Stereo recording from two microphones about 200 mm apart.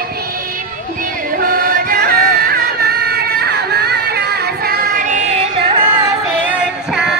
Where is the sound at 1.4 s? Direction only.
45° right (ahead or behind).